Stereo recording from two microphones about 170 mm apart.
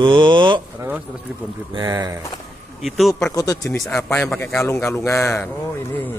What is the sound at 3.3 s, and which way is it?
A man's voice, 20° left (ahead or behind).